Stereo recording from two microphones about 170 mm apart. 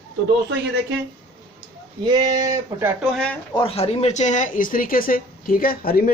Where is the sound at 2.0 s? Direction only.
25° right (ahead or behind).